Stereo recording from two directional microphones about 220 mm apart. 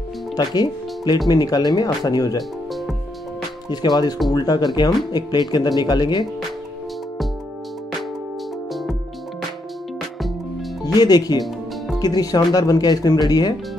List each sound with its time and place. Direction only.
0.4 s speech: 20° left (ahead or behind)
3.6 s speech: 20° left (ahead or behind)
10.9 s speech: 15° left (ahead or behind)